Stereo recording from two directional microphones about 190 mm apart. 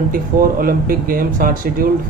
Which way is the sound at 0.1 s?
50° right (ahead or behind).